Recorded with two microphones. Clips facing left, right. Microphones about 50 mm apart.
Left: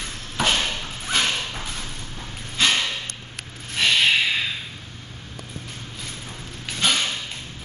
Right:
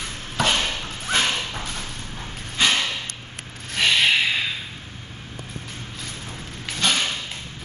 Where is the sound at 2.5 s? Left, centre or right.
Centre.